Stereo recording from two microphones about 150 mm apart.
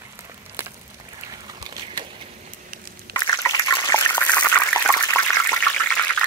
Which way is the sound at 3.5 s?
25° left (ahead or behind).